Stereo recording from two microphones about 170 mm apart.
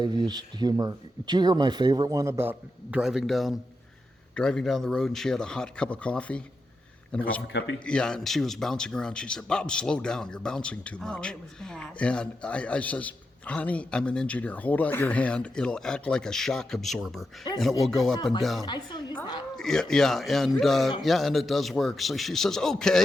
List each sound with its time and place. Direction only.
0.0 s speech: 25° right (ahead or behind); by 18.6 s centre (ahead or behind)
18.6 s a woman's voice: 25° left (ahead or behind)
19.5 s speech: 5° left (ahead or behind)